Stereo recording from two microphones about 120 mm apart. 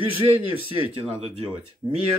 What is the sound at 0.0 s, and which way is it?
Speech, 45° right (ahead or behind).